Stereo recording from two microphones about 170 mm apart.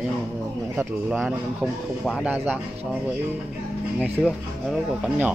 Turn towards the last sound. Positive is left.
turn(degrees=0)  # may be behind; listen again after turning